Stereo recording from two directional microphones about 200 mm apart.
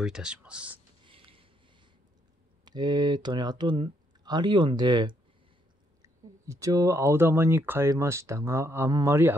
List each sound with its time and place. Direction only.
0.0 s speech: 5° right (ahead or behind)
1.0 s a sound: 25° right (ahead or behind)
2.6 s speech: 20° right (ahead or behind)